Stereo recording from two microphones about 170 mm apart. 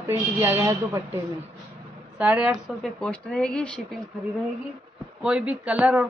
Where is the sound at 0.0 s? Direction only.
15° right (ahead or behind).